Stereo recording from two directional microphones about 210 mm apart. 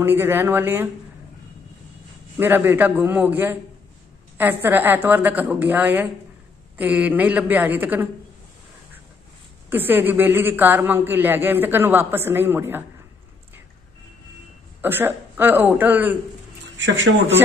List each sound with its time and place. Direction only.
0.0 s a man's voice: 10° right (ahead or behind)
2.3 s a man's voice: 10° right (ahead or behind)
9.7 s a man's voice: 10° right (ahead or behind)
14.8 s a man's voice: 10° right (ahead or behind)
16.7 s speech: 60° right (ahead or behind)